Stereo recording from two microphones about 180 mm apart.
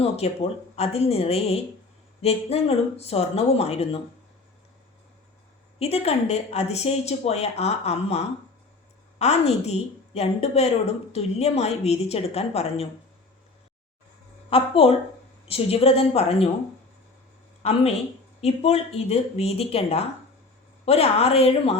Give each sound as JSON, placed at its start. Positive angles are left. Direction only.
{"t": 0.2, "sound": "a woman's voice", "side_deg": 35}
{"t": 5.8, "sound": "a woman's voice", "side_deg": 35}
{"t": 14.5, "sound": "a woman's voice", "side_deg": 35}
{"t": 17.6, "sound": "a woman's voice", "side_deg": 35}